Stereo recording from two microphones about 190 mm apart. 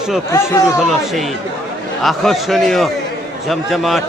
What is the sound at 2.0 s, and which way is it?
Speech, centre (ahead or behind).